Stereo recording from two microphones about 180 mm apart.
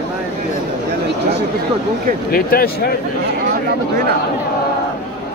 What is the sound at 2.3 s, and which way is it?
Speech, 55° left (ahead or behind).